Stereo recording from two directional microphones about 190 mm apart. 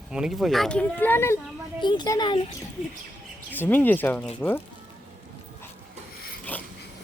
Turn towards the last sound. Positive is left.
turn(degrees=10)  # may be behind; listen again after turning